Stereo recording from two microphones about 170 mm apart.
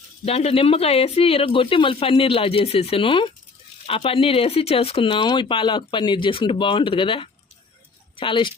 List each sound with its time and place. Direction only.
0.3 s speech: 35° left (ahead or behind)